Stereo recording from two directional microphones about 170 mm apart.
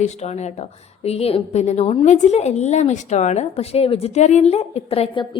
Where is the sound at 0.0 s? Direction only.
40° left (ahead or behind).